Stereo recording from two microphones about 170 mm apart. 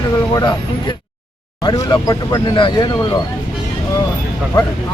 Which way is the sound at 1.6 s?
25° left (ahead or behind).